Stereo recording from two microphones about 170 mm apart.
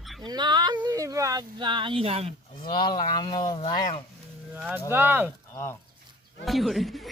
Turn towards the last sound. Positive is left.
turn(degrees=0)  # may be behind; listen again after turning